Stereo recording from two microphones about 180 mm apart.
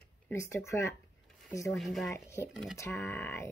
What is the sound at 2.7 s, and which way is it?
Speech, 15° left (ahead or behind).